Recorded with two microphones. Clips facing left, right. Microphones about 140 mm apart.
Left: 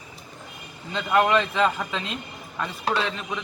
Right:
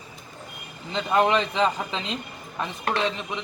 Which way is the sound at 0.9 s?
20° right (ahead or behind).